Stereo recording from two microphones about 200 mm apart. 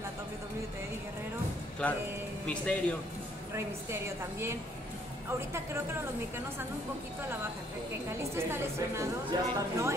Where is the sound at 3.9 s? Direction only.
10° right (ahead or behind).